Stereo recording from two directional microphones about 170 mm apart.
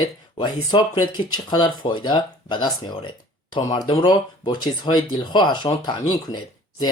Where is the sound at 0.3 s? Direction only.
25° left (ahead or behind).